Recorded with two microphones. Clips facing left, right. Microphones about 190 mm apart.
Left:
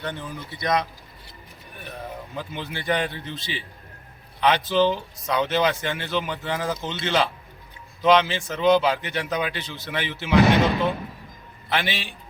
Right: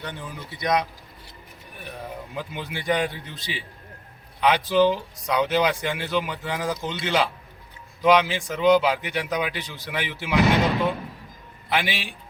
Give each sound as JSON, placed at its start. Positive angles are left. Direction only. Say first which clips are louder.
{"t": 0.0, "sound": "speech", "louder": "left 3 dB", "side_deg": -15}
{"t": 2.3, "sound": "speech", "louder": "even", "side_deg": -15}
{"t": 11.7, "sound": "speech", "louder": "even", "side_deg": -10}